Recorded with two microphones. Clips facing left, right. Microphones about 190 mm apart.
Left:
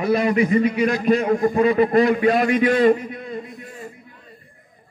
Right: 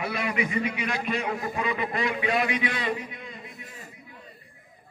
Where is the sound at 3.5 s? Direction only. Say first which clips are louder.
Left 9 dB; 40° left (ahead or behind).